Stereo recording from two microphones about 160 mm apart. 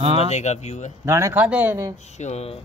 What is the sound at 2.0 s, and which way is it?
Speech, 45° left (ahead or behind).